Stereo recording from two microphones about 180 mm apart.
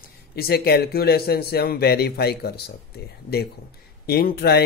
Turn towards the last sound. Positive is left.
turn(degrees=60)  # may be behind; listen again after turning